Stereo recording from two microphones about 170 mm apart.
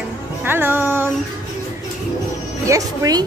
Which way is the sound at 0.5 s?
10° right (ahead or behind).